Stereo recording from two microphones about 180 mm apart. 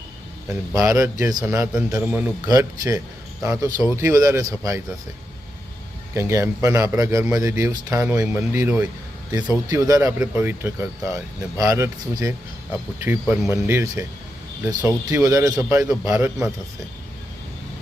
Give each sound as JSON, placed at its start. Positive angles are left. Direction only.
{"t": 0.7, "sound": "speech", "side_deg": -20}
{"t": 2.5, "sound": "speech", "side_deg": -20}
{"t": 6.1, "sound": "speech", "side_deg": -15}
{"t": 15.2, "sound": "speech", "side_deg": -20}